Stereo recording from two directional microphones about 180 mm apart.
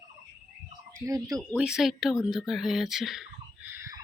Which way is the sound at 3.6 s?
15° right (ahead or behind).